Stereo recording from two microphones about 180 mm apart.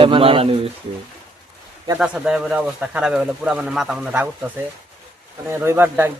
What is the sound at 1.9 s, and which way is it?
Speech, 5° right (ahead or behind).